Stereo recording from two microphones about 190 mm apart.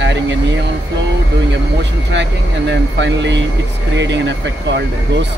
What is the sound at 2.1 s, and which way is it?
Speech, 70° right (ahead or behind).